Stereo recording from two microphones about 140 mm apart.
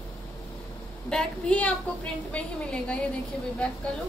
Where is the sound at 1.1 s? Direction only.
5° left (ahead or behind).